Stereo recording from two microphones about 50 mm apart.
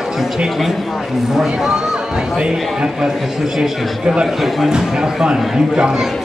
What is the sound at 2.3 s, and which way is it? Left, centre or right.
A man's voice, centre.